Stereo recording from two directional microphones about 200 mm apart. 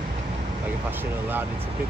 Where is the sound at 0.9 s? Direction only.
10° right (ahead or behind).